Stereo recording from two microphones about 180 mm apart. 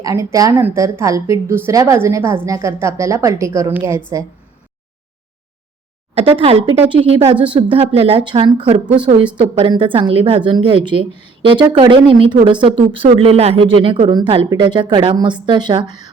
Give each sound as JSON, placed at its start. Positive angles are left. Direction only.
{"t": 0.0, "sound": "a woman's voice", "side_deg": -15}
{"t": 6.1, "sound": "speech", "side_deg": -30}